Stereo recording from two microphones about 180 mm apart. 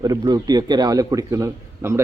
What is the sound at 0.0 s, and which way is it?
A man's voice, 20° right (ahead or behind).